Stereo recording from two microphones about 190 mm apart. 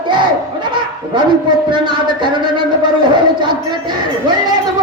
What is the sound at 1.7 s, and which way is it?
Speech, 25° right (ahead or behind).